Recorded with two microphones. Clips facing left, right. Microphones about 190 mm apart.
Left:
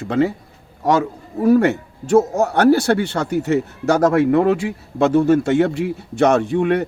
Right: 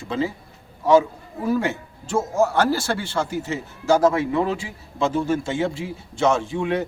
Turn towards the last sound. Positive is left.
turn(degrees=65)  # may be behind; listen again after turning